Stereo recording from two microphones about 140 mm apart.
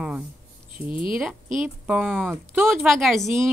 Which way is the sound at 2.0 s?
5° left (ahead or behind).